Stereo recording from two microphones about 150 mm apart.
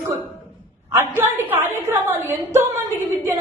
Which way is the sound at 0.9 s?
15° right (ahead or behind).